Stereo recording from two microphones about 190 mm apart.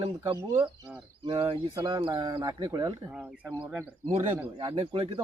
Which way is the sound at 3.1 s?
5° right (ahead or behind).